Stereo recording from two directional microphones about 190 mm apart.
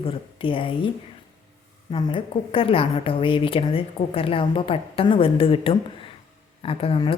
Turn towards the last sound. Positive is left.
turn(degrees=30)  # may be behind; listen again after turning